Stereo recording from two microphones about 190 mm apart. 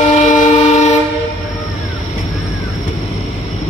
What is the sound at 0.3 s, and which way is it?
Train, 40° left (ahead or behind).